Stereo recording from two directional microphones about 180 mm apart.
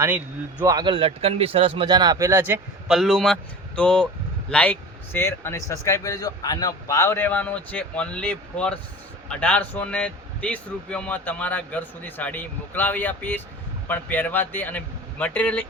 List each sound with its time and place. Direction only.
0.6 s speech: 20° right (ahead or behind)
2.8 s a man's voice: centre (ahead or behind)